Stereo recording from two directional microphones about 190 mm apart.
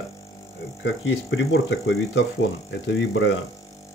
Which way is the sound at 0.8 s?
85° left.